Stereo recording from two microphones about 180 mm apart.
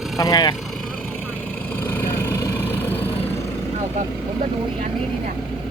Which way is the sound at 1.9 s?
15° left (ahead or behind).